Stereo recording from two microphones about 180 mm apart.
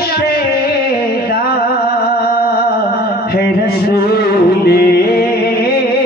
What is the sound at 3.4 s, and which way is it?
Music, 60° left (ahead or behind).